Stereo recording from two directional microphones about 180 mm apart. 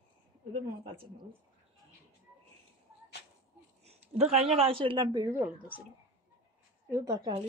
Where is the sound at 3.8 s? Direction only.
35° right (ahead or behind); by 5.7 s 15° right (ahead or behind).